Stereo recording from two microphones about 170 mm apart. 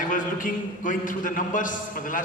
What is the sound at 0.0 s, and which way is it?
A man's voice, 50° left (ahead or behind).